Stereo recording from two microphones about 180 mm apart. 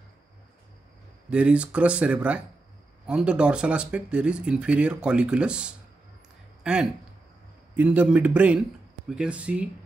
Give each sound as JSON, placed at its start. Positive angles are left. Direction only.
{"t": 1.3, "sound": "speech", "side_deg": -5}